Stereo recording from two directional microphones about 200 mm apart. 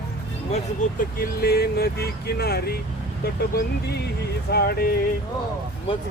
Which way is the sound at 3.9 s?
55° left (ahead or behind).